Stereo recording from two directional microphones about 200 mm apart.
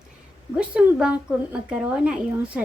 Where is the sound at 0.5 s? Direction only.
5° right (ahead or behind).